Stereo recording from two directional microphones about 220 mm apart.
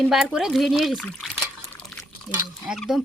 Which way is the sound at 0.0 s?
Centre (ahead or behind).